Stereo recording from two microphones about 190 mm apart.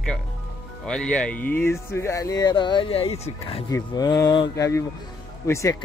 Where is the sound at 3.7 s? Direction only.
20° left (ahead or behind).